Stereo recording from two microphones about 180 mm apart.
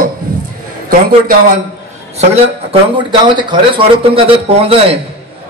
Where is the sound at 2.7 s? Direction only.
25° right (ahead or behind).